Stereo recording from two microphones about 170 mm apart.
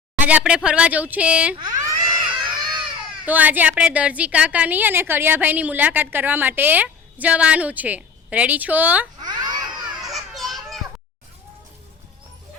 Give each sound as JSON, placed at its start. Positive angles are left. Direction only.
{"t": 0.2, "sound": "a woman's voice", "side_deg": -10}
{"t": 1.5, "sound": "baby cry", "side_deg": -20}
{"t": 3.2, "sound": "a woman's voice", "side_deg": -10}
{"t": 9.2, "sound": "babbling", "side_deg": -25}
{"t": 10.0, "sound": "children playing", "side_deg": 0}